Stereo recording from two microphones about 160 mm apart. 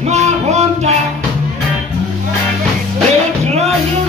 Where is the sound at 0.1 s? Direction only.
45° right (ahead or behind).